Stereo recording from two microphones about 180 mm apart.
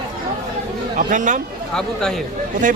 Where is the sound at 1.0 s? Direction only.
45° right (ahead or behind).